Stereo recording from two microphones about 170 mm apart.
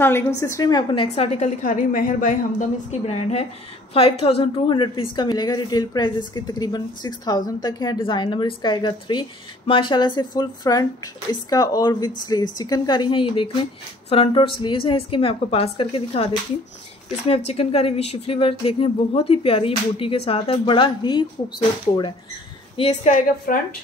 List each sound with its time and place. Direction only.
0.4 s a woman's voice: 20° left (ahead or behind)
1.0 s a woman's voice: 40° left (ahead or behind)
17.5 s speech: 35° left (ahead or behind)
22.8 s a woman's voice: 45° left (ahead or behind)